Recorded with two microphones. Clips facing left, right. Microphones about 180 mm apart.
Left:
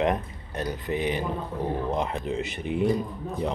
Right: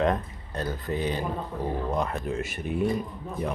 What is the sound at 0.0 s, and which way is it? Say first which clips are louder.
Speech: even; 20° left (ahead or behind).